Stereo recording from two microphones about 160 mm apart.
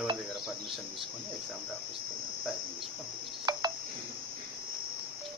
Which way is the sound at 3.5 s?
25° right (ahead or behind).